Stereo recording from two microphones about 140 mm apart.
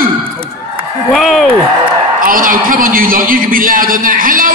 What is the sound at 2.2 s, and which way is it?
A man's voice, 80° right.